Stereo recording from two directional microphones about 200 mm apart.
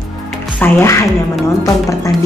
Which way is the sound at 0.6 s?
15° left (ahead or behind).